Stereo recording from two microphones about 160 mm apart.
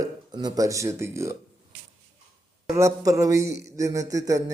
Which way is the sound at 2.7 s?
20° right (ahead or behind).